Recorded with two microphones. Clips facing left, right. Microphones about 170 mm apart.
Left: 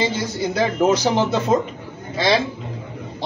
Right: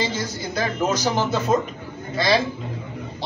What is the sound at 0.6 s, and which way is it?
Speech, 15° left (ahead or behind).